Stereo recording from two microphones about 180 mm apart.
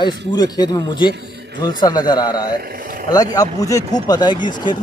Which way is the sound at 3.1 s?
20° left (ahead or behind).